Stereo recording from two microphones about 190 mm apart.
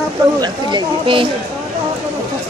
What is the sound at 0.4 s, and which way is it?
Speech, 25° right (ahead or behind).